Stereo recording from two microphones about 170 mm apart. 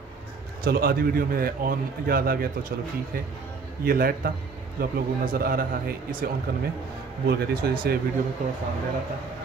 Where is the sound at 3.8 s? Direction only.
60° right (ahead or behind).